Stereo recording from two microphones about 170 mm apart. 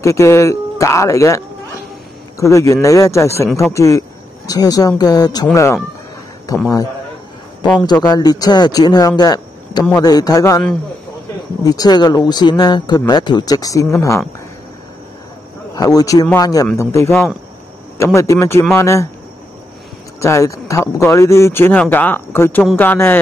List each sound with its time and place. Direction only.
0.0 s speech: 15° left (ahead or behind)
8.1 s speech: 20° left (ahead or behind)
11.6 s speech: 20° left (ahead or behind)
15.7 s speech: 20° left (ahead or behind)
17.1 s speech: 5° left (ahead or behind)
17.9 s speech: 15° left (ahead or behind)
20.2 s speech: 15° left (ahead or behind)